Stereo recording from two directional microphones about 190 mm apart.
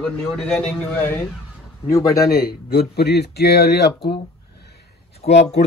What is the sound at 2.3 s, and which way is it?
Speech, 55° left (ahead or behind).